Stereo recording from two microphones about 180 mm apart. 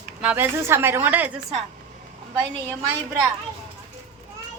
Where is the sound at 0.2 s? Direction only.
10° right (ahead or behind).